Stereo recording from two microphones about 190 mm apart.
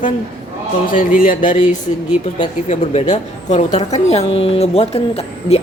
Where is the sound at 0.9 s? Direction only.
45° left (ahead or behind).